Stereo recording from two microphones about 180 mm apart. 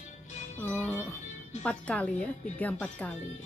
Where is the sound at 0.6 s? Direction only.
10° left (ahead or behind).